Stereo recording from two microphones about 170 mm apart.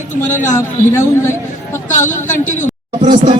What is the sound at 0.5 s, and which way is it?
Speech, 15° left (ahead or behind).